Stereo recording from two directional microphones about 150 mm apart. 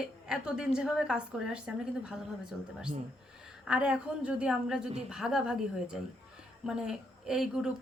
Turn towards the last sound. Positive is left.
turn(degrees=-5)  # may be behind; listen again after turning